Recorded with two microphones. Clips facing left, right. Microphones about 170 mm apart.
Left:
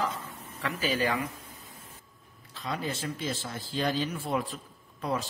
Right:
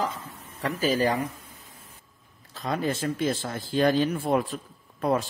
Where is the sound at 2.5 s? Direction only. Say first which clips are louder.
Right 6 dB; 50° right (ahead or behind).